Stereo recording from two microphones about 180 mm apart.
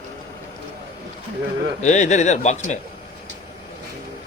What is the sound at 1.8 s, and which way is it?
Speech, 40° left (ahead or behind).